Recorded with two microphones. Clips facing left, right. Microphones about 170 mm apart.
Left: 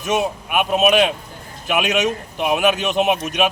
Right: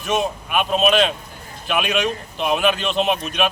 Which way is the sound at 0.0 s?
15° left (ahead or behind).